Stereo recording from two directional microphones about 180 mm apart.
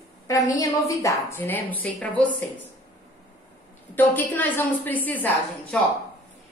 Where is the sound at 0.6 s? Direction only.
20° left (ahead or behind).